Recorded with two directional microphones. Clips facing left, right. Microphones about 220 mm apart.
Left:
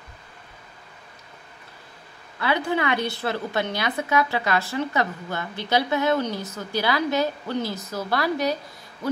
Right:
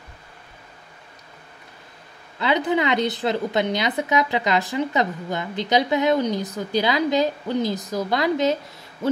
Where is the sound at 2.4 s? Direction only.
20° right (ahead or behind).